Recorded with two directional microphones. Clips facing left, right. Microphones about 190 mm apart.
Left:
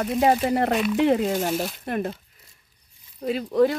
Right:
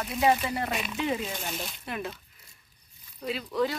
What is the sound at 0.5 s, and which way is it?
Speech, 60° left (ahead or behind).